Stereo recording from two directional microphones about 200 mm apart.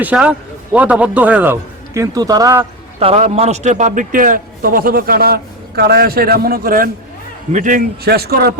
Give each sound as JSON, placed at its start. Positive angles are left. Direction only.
{"t": 0.0, "sound": "a man's voice", "side_deg": -5}
{"t": 3.0, "sound": "a man's voice", "side_deg": -30}